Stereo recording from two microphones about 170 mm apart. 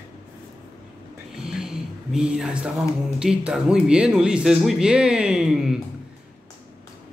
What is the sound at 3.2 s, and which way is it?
Speech, 5° right (ahead or behind).